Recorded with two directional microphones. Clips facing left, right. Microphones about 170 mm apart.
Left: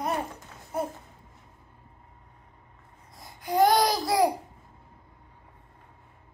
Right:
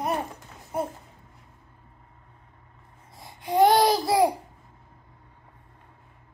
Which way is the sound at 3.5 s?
25° right (ahead or behind).